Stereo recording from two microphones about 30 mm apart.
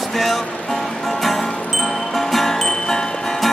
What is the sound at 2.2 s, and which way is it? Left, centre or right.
Music, centre.